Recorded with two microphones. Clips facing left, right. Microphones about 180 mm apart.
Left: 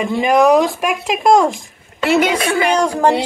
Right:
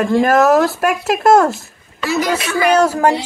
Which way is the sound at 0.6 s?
10° left (ahead or behind).